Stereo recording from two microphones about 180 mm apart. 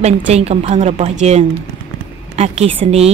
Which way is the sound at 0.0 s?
35° right (ahead or behind).